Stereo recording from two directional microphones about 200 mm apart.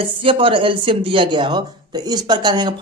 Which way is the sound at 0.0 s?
25° right (ahead or behind).